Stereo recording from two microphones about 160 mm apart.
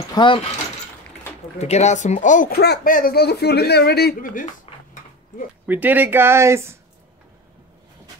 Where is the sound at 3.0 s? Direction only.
70° left (ahead or behind).